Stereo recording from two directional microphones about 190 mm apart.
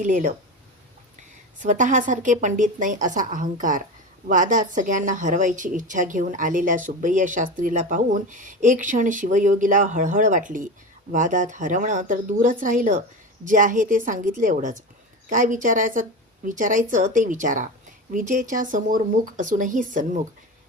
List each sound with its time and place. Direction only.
0.0 s a woman's voice: 40° right (ahead or behind)
1.6 s a woman's voice: 40° right (ahead or behind)